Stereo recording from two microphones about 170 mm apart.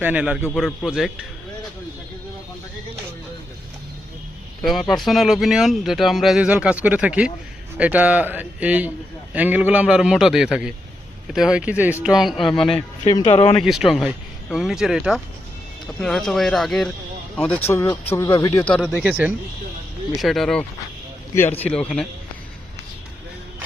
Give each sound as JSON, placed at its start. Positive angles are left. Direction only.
{"t": 0.0, "sound": "speech", "side_deg": -10}
{"t": 4.6, "sound": "a man's voice", "side_deg": 0}
{"t": 13.1, "sound": "speech", "side_deg": 30}
{"t": 13.6, "sound": "speech", "side_deg": 0}
{"t": 17.5, "sound": "a man's voice", "side_deg": 15}
{"t": 18.6, "sound": "speech", "side_deg": 5}
{"t": 19.0, "sound": "a man's voice", "side_deg": -5}